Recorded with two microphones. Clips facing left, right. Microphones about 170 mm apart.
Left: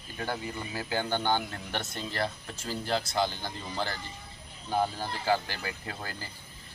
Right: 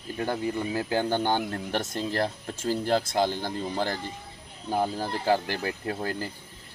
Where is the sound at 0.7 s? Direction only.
45° right (ahead or behind).